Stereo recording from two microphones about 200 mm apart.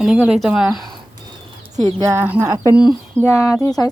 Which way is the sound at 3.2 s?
15° left (ahead or behind).